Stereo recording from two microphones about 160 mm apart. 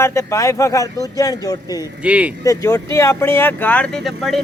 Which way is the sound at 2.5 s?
20° left (ahead or behind).